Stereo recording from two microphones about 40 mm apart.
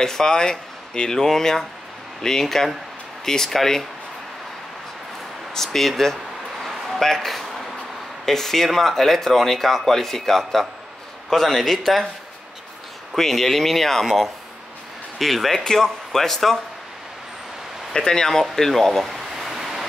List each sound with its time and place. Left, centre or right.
0.0 s speech: centre
1.1 s speech: centre
5.5 s speech: centre
6.6 s a sound: centre
8.3 s speech: centre
13.1 s speech: centre
14.0 s speech: centre
15.1 s speech: centre
15.6 s speech: centre
17.9 s speech: centre
19.0 s a sound: centre